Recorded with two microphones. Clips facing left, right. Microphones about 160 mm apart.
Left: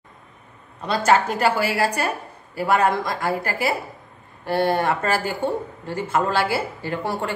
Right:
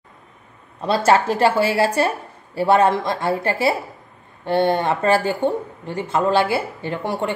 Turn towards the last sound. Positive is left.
turn(degrees=-20)  # may be behind; listen again after turning